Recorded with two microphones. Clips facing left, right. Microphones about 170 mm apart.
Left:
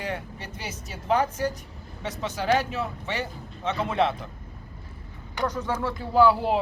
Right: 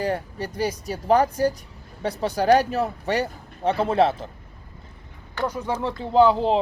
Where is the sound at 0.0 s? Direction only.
35° right (ahead or behind).